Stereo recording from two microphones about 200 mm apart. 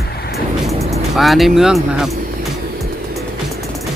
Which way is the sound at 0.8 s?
30° right (ahead or behind).